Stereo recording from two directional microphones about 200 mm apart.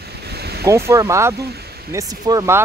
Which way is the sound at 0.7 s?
15° right (ahead or behind).